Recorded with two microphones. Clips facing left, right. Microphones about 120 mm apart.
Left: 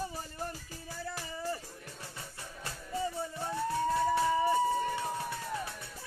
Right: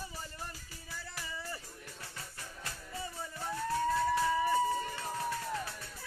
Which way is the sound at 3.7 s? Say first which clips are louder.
Left 1 dB; 20° left (ahead or behind).